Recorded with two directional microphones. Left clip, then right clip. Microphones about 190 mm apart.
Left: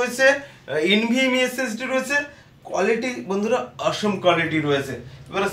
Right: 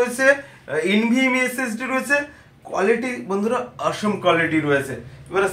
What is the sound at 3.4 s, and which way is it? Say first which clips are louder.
A man's voice: left 1 dB; 20° left (ahead or behind).